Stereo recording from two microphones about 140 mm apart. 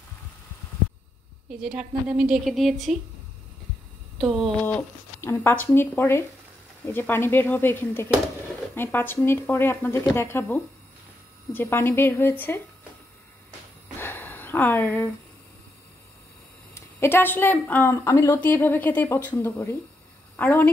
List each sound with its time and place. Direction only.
1.6 s a woman's voice: 5° right (ahead or behind)
4.2 s a woman's voice: centre (ahead or behind)
4.6 s speech: 15° left (ahead or behind)
13.9 s a sound: 15° left (ahead or behind)
16.7 s speech: 15° left (ahead or behind)